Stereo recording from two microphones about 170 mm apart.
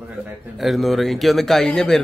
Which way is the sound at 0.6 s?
Centre (ahead or behind).